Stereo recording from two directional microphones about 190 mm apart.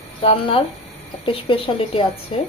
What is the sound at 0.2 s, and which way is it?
Speech, 25° left (ahead or behind).